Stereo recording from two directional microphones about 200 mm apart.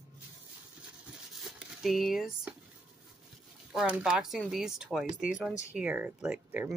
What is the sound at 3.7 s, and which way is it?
Speech, 5° right (ahead or behind).